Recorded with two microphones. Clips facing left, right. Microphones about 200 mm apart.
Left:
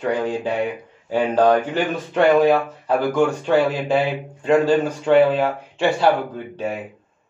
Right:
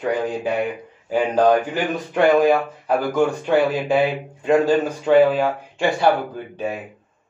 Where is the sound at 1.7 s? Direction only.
10° right (ahead or behind).